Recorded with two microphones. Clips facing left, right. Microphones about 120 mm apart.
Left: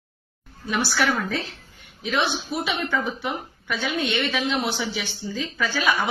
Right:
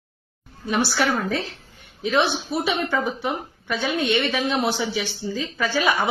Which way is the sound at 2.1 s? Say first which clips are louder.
Right 3 dB; 30° right (ahead or behind).